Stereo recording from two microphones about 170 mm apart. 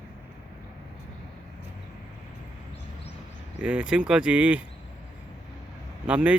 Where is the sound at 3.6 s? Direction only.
5° right (ahead or behind).